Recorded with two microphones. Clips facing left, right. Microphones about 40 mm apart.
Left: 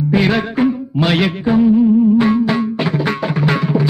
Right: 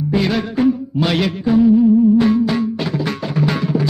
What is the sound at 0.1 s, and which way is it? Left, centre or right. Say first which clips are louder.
Music: left 3 dB; left.